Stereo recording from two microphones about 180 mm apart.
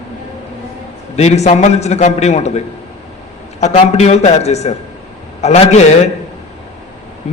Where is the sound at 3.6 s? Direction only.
40° left (ahead or behind).